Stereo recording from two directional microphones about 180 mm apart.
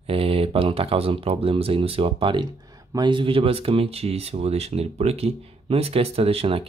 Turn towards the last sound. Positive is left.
turn(degrees=-35)  # may be behind; listen again after turning